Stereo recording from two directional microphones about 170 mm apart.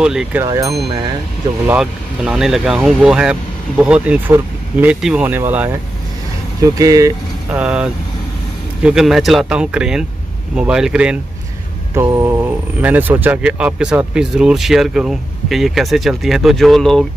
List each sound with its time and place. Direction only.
0.0 s speech: 5° right (ahead or behind)
0.4 s speech: 20° right (ahead or behind)
1.7 s speech: 5° right (ahead or behind)
7.5 s speech: 5° right (ahead or behind)
11.9 s mantra: 15° right (ahead or behind)
12.8 s speech: 10° right (ahead or behind)